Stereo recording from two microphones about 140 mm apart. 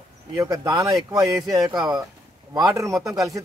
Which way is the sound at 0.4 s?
25° right (ahead or behind).